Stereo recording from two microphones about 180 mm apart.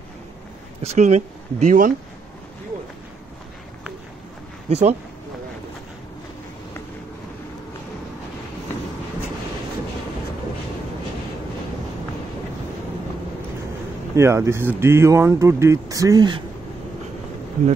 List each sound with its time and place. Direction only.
0.8 s speech: 40° right (ahead or behind)
4.6 s speech: 40° right (ahead or behind)
14.1 s speech: 15° right (ahead or behind)